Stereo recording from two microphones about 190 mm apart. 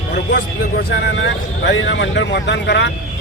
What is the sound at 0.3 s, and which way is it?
A man's voice, 60° left (ahead or behind).